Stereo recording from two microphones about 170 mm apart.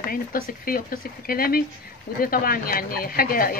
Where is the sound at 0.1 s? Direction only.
60° left (ahead or behind).